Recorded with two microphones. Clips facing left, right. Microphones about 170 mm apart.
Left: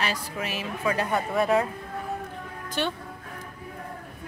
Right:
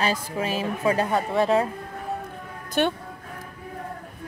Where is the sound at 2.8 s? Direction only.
55° right (ahead or behind).